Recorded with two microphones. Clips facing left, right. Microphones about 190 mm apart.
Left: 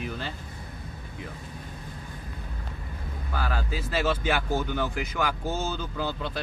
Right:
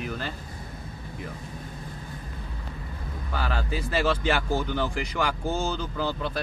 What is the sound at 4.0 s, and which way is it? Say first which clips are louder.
Speech: right 1 dB; centre (ahead or behind).